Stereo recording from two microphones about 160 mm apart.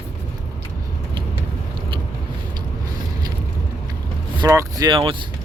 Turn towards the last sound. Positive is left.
turn(degrees=-35)  # may be behind; listen again after turning